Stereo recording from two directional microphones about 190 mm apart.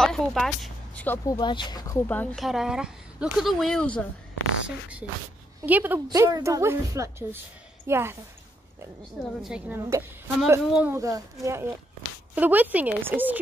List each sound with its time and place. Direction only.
0.0 s speech: centre (ahead or behind)
4.6 s speech: 5° right (ahead or behind)
6.0 s a woman's voice: 20° right (ahead or behind)
9.4 s speech: 5° right (ahead or behind)
9.8 s speech: 15° right (ahead or behind)